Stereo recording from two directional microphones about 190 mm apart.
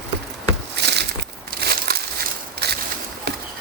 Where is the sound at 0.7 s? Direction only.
60° right (ahead or behind).